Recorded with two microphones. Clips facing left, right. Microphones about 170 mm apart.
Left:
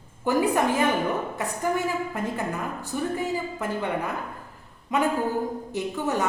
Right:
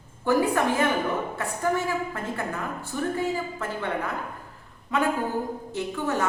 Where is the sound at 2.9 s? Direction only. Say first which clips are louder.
Even; 15° left (ahead or behind).